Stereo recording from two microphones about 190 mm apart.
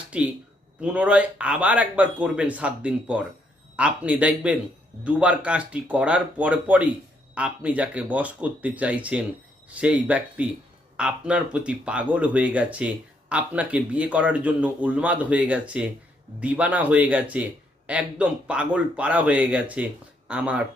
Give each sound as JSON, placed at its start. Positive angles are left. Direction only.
{"t": 0.1, "sound": "speech", "side_deg": -5}